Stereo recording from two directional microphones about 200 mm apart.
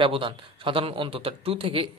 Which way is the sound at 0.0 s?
25° right (ahead or behind).